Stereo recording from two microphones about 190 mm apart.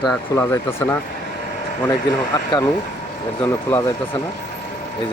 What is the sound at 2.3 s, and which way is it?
Speech, 15° left (ahead or behind).